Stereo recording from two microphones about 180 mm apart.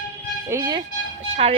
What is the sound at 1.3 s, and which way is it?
Speech, 35° right (ahead or behind).